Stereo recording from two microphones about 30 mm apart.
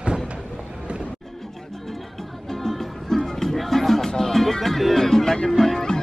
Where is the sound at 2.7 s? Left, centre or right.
Centre.